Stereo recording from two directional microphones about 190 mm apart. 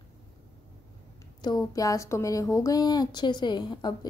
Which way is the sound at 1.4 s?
20° left (ahead or behind).